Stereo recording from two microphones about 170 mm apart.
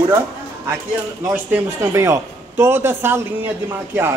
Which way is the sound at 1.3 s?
15° right (ahead or behind).